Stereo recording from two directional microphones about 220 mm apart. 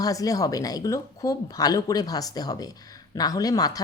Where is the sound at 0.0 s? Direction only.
15° left (ahead or behind).